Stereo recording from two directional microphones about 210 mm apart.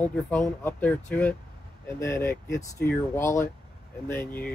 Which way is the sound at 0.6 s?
5° left (ahead or behind).